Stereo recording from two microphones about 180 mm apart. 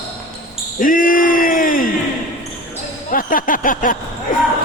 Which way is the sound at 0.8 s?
50° left (ahead or behind).